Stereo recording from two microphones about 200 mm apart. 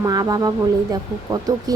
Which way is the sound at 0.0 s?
20° right (ahead or behind).